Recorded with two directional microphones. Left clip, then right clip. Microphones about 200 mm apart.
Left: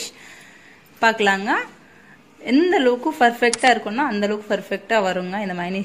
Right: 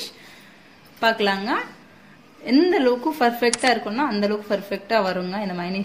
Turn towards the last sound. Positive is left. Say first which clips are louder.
# left 2 dB
turn(degrees=20)  # may be behind; listen again after turning